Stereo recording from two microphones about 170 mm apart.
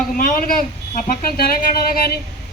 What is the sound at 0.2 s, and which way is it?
Speech, 60° left (ahead or behind).